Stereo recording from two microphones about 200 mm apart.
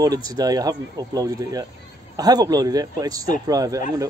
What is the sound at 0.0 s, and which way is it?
Speech, 20° right (ahead or behind).